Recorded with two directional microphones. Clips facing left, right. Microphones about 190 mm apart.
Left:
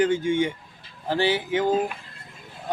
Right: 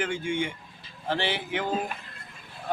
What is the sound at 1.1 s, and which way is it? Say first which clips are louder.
Speech: left 6 dB; 40° left (ahead or behind).